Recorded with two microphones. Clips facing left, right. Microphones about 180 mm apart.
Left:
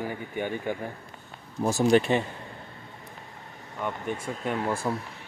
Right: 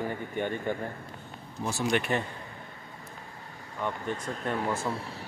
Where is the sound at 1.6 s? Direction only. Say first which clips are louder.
Left 7 dB; 45° left (ahead or behind).